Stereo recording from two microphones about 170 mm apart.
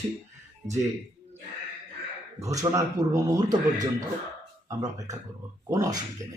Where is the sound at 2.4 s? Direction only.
20° right (ahead or behind).